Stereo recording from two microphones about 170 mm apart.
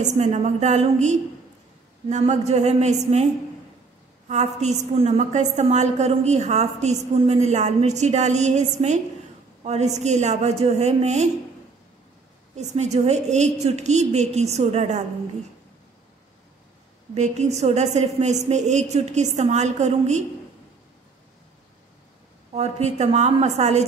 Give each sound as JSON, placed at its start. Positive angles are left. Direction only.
{"t": 0.0, "sound": "a woman's voice", "side_deg": -45}
{"t": 4.3, "sound": "a woman's voice", "side_deg": -40}
{"t": 12.5, "sound": "a woman's voice", "side_deg": -40}
{"t": 17.1, "sound": "a woman's voice", "side_deg": -40}
{"t": 22.5, "sound": "a woman's voice", "side_deg": -40}